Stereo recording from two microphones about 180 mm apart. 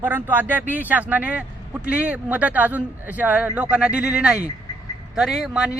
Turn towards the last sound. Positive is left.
turn(degrees=-5)  # may be behind; listen again after turning